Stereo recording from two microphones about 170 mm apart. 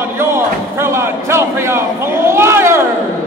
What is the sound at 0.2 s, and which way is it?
Speech, 15° right (ahead or behind).